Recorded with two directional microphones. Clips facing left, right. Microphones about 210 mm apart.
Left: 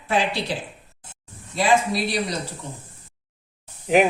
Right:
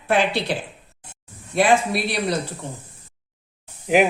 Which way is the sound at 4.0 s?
Centre (ahead or behind).